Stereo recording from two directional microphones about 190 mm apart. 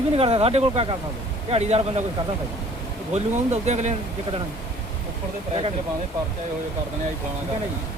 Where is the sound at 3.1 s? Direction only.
35° right (ahead or behind).